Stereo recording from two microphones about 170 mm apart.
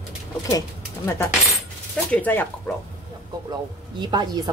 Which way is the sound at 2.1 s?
10° left (ahead or behind).